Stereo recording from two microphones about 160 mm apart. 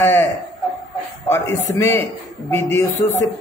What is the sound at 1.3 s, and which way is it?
Speech, 15° left (ahead or behind).